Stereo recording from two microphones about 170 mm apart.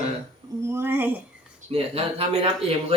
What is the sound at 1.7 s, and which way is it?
Speech, 35° right (ahead or behind).